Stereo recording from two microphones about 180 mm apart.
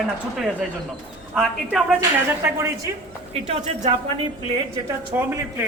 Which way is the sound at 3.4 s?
40° right (ahead or behind).